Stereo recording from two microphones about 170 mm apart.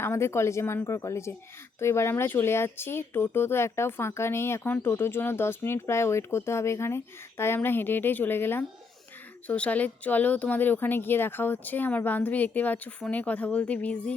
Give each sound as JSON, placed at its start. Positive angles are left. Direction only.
{"t": 0.0, "sound": "speech", "side_deg": 15}